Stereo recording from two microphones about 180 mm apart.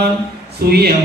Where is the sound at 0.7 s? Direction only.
60° right (ahead or behind).